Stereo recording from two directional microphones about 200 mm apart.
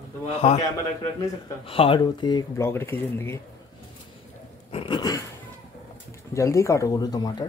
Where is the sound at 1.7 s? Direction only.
25° left (ahead or behind); by 3.3 s 10° left (ahead or behind).